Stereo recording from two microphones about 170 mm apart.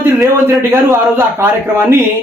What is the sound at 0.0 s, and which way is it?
A man's voice, 15° right (ahead or behind).